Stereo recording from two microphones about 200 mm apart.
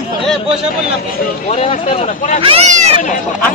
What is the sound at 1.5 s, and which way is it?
Speech, 30° left (ahead or behind).